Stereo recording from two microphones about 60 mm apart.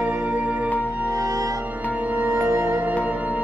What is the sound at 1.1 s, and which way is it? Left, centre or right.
Music, right.